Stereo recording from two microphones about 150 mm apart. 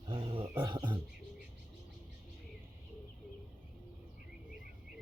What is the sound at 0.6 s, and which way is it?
Speech, 30° right (ahead or behind).